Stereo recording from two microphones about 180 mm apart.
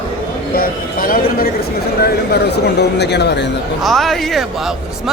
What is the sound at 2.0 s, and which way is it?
Speech, 65° left (ahead or behind).